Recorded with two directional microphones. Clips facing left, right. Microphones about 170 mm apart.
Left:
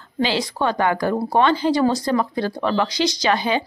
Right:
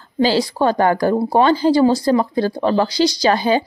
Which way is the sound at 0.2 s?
35° right (ahead or behind).